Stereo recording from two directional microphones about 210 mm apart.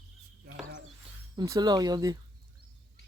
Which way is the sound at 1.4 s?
20° right (ahead or behind).